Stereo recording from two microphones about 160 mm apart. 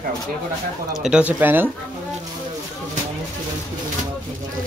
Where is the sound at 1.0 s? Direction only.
5° right (ahead or behind).